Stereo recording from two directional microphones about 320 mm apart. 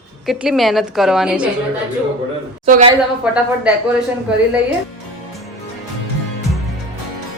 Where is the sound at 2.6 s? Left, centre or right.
Centre.